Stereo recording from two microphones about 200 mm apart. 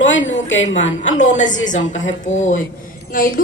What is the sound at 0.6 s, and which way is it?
A woman's voice, 35° left (ahead or behind).